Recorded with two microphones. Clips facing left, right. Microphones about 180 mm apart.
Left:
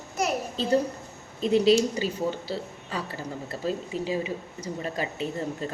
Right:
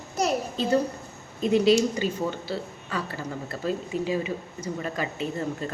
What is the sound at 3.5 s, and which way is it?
Speech, 35° left (ahead or behind).